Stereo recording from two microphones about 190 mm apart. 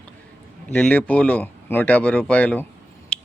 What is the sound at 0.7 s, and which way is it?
A man's voice, 5° left (ahead or behind).